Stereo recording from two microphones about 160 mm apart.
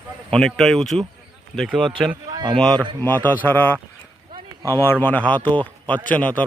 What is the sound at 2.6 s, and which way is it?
Speech, 5° left (ahead or behind).